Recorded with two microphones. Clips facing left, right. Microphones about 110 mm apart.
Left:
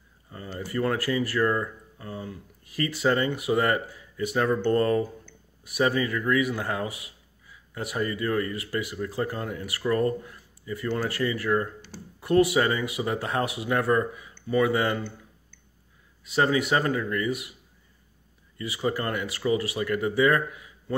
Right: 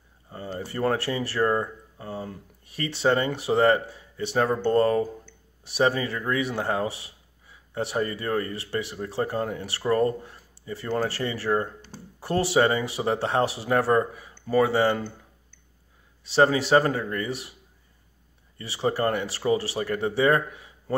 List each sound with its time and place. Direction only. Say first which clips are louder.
0.3 s speech: even; 30° right (ahead or behind)
16.3 s speech: right 3 dB; 30° right (ahead or behind)
18.6 s speech: right 3 dB; 30° right (ahead or behind)